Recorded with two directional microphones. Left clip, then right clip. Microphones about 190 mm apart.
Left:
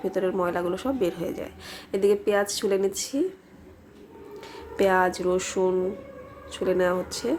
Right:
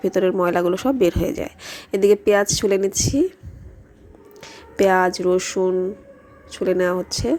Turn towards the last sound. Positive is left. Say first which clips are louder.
# right 5 dB
turn(degrees=-30)  # may be behind; listen again after turning